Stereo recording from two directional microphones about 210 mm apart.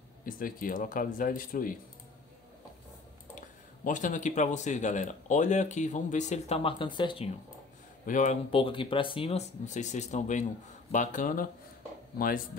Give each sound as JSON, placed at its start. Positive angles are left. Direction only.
{"t": 0.2, "sound": "speech", "side_deg": 40}
{"t": 3.3, "sound": "speech", "side_deg": 40}
{"t": 8.0, "sound": "speech", "side_deg": 35}